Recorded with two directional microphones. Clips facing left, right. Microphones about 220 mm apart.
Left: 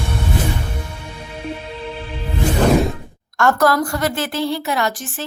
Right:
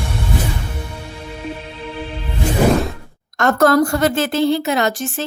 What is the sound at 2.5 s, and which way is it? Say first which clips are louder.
Music: even; 5° right (ahead or behind).